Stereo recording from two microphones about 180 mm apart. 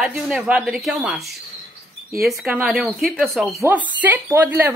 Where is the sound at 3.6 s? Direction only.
10° right (ahead or behind).